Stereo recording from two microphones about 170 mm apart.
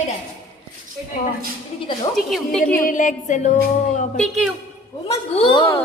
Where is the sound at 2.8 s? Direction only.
50° left (ahead or behind).